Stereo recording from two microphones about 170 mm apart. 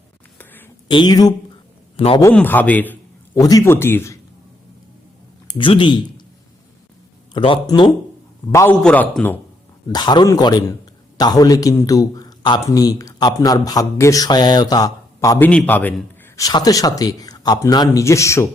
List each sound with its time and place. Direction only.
0.3 s a sound: 10° left (ahead or behind)
0.9 s a man's voice: 25° left (ahead or behind)
2.0 s a man's voice: 35° left (ahead or behind)
2.3 s a man's voice: 10° left (ahead or behind)
5.5 s speech: 30° left (ahead or behind)
7.3 s a man's voice: 30° left (ahead or behind)
8.8 s speech: 5° left (ahead or behind)
9.9 s a man's voice: 25° left (ahead or behind)
15.4 s a man's voice: 10° left (ahead or behind)
16.4 s a man's voice: 20° left (ahead or behind)